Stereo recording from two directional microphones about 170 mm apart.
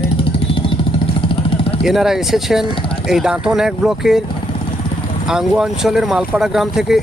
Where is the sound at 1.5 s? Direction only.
35° left (ahead or behind).